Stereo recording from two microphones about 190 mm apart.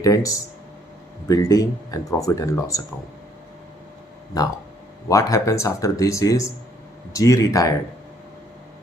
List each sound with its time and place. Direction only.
0.0 s speech: 15° left (ahead or behind)
5.0 s speech: 15° left (ahead or behind)